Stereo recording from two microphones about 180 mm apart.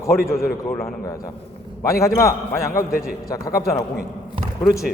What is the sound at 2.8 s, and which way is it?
Speech, 55° left (ahead or behind).